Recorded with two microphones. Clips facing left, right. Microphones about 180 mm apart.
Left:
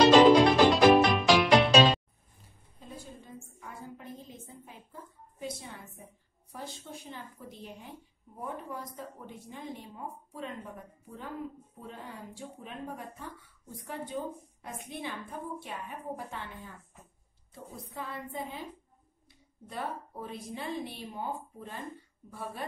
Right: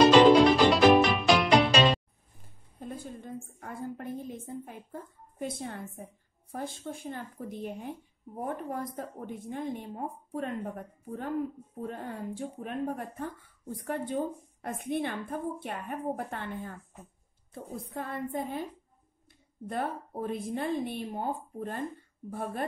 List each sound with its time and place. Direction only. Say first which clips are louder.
0.2 s music: right 1 dB; centre (ahead or behind)
2.8 s a sound: right 6 dB; 55° right (ahead or behind)
6.5 s speech: right 6 dB; 50° right (ahead or behind)
17.7 s speech: right 5 dB; 50° right (ahead or behind)